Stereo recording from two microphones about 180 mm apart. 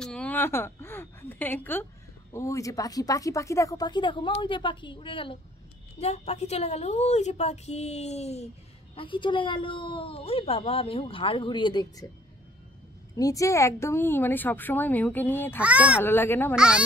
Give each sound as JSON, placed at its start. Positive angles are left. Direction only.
{"t": 0.0, "sound": "a sound", "side_deg": 5}
{"t": 2.3, "sound": "a woman's voice", "side_deg": 15}
{"t": 13.1, "sound": "a woman's voice", "side_deg": 20}
{"t": 15.6, "sound": "a child's voice", "side_deg": -5}
{"t": 16.0, "sound": "a woman's voice", "side_deg": 10}
{"t": 16.5, "sound": "speech", "side_deg": -5}